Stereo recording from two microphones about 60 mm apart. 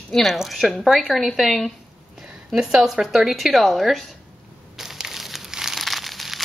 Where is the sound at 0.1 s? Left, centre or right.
Centre.